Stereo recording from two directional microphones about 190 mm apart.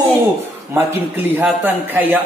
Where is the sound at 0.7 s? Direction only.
10° right (ahead or behind).